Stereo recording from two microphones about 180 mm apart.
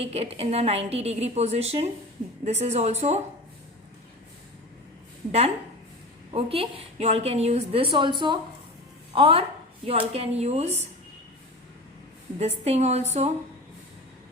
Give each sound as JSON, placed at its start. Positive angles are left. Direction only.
{"t": 0.0, "sound": "a woman's voice", "side_deg": -35}
{"t": 6.3, "sound": "a woman's voice", "side_deg": -30}
{"t": 12.4, "sound": "a woman's voice", "side_deg": -35}